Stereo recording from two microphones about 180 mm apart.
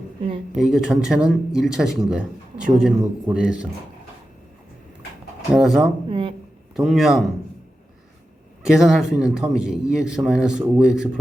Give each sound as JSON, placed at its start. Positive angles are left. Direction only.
{"t": 0.5, "sound": "speech", "side_deg": -5}
{"t": 5.5, "sound": "speech", "side_deg": -5}
{"t": 6.1, "sound": "a sound", "side_deg": -30}
{"t": 6.7, "sound": "speech", "side_deg": 0}
{"t": 8.6, "sound": "speech", "side_deg": -5}